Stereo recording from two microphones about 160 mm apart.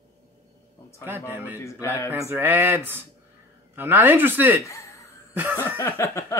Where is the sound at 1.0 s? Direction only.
15° right (ahead or behind).